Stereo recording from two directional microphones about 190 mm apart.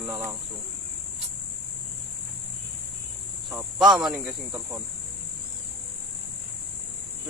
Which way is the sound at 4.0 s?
5° right (ahead or behind).